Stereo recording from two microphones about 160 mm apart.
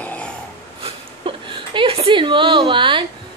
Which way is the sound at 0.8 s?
30° right (ahead or behind).